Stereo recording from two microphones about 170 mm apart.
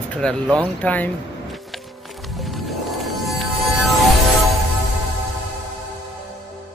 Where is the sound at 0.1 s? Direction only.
5° left (ahead or behind).